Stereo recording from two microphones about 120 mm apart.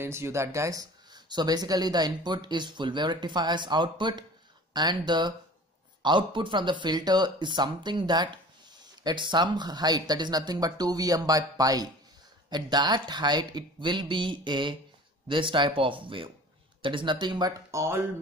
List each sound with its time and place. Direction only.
0.0 s speech: 20° right (ahead or behind); by 17.5 s 40° right (ahead or behind)
17.6 s speech: 25° right (ahead or behind)